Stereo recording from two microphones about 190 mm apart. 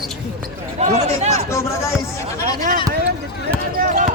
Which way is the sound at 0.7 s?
35° right (ahead or behind).